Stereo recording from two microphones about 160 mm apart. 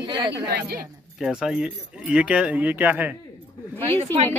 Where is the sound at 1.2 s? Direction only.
5° right (ahead or behind).